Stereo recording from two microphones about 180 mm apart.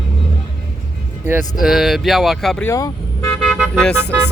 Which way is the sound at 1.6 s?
Centre (ahead or behind).